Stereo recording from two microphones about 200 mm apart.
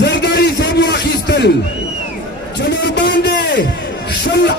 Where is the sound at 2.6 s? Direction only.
55° left (ahead or behind).